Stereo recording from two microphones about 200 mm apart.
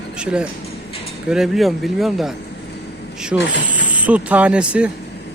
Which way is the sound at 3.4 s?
65° left (ahead or behind).